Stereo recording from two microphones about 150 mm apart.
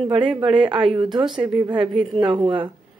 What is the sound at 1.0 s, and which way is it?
Speech, 30° right (ahead or behind).